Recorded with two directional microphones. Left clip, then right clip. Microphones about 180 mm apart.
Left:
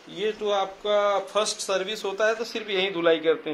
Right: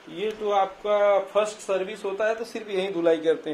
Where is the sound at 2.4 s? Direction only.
Centre (ahead or behind).